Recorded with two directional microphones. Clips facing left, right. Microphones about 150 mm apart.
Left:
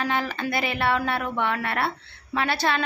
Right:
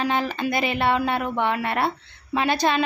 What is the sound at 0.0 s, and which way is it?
A woman's voice, 20° right (ahead or behind).